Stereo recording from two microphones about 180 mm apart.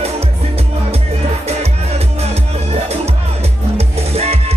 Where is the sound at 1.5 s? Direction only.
35° right (ahead or behind).